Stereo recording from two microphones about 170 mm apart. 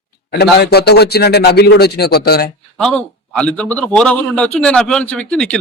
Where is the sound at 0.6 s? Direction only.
70° left (ahead or behind).